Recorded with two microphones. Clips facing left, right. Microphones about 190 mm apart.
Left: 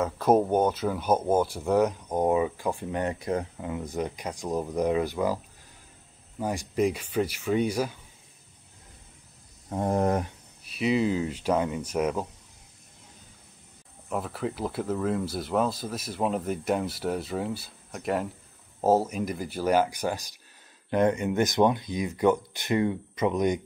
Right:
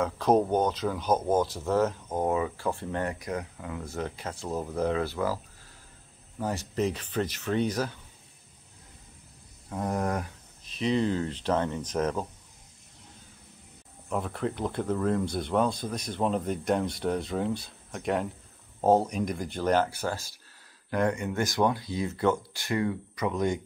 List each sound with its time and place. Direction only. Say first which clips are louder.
0.0 s speech: left 1 dB; 5° left (ahead or behind)
9.7 s speech: left 5 dB; 25° left (ahead or behind)
10.6 s speech: left 2 dB; 10° left (ahead or behind)
14.0 s speech: even; 5° left (ahead or behind)